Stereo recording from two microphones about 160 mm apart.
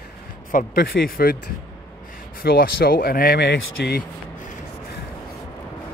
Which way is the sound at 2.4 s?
70° left (ahead or behind).